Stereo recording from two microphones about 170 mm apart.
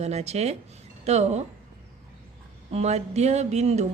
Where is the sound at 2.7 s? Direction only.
40° right (ahead or behind).